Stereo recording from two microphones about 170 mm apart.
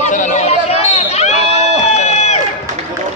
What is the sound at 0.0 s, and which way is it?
Chatter, 45° left (ahead or behind).